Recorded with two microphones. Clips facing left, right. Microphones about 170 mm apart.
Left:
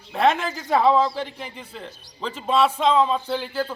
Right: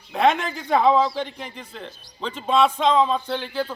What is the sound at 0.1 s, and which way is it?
A man's voice, centre (ahead or behind).